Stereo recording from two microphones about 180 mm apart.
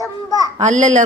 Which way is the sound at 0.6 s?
40° right (ahead or behind).